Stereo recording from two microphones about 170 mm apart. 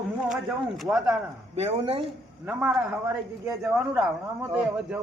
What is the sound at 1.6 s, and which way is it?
Speech, 35° right (ahead or behind).